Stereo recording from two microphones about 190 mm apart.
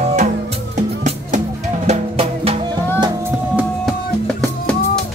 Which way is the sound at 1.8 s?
35° right (ahead or behind).